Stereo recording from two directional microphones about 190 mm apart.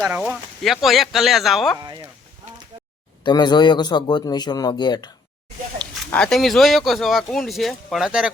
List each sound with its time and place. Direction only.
0.0 s speech: 5° right (ahead or behind)
1.8 s speech: 20° right (ahead or behind)
3.2 s a man's voice: 20° left (ahead or behind)
6.1 s speech: 5° left (ahead or behind)